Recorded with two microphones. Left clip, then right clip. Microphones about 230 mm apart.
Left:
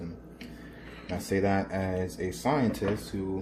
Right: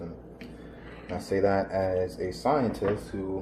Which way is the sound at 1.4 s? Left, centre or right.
Left.